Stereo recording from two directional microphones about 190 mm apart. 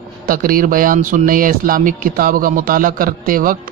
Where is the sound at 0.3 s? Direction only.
50° right (ahead or behind).